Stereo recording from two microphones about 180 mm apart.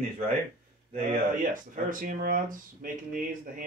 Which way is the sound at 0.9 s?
45° right (ahead or behind).